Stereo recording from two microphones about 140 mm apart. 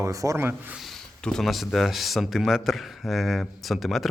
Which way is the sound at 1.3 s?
Centre (ahead or behind).